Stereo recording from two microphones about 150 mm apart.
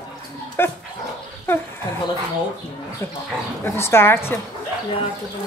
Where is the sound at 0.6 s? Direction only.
15° left (ahead or behind).